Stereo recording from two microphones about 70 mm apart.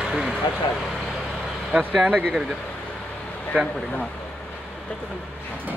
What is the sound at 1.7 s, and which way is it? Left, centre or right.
Speech, right.